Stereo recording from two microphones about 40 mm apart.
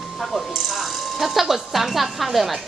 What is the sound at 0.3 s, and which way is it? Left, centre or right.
Speech, centre.